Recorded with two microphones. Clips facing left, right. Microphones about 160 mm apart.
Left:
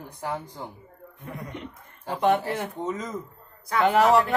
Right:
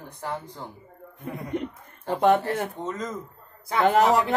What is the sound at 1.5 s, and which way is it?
Speech, 45° right (ahead or behind).